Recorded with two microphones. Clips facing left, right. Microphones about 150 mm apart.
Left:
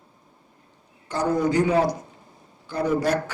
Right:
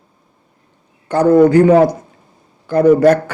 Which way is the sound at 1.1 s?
55° right (ahead or behind).